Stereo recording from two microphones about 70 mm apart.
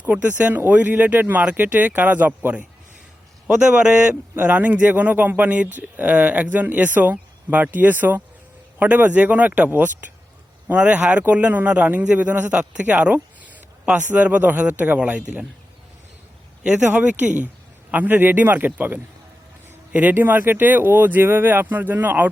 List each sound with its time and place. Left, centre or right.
0.0 s speech: right
3.4 s a man's voice: centre
4.1 s speech: right
16.6 s speech: centre